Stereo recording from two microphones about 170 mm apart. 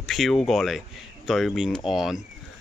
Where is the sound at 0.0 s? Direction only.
Centre (ahead or behind).